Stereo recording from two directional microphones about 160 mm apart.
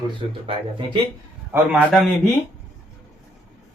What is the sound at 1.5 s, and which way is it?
Speech, 10° right (ahead or behind).